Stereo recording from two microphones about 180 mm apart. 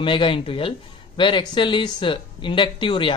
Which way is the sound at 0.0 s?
30° left (ahead or behind).